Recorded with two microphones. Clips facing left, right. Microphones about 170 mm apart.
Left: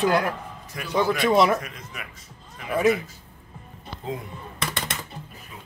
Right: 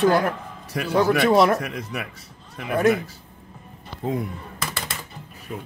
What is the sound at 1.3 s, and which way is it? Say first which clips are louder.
Speech: right 1 dB; centre (ahead or behind).